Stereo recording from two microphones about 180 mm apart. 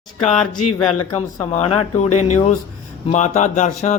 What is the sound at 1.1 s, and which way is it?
Speech, 30° left (ahead or behind).